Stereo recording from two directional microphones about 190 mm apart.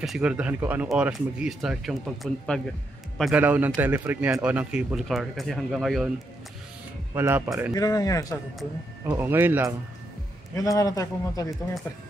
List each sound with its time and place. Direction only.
0.0 s a man's voice: 5° right (ahead or behind)
7.2 s speech: 10° right (ahead or behind)
7.7 s a man's voice: 20° left (ahead or behind)
9.0 s speech: 10° right (ahead or behind)
10.5 s a man's voice: 15° left (ahead or behind)